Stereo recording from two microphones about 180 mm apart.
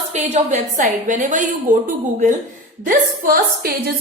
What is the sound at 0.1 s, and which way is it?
A woman's voice, 40° right (ahead or behind).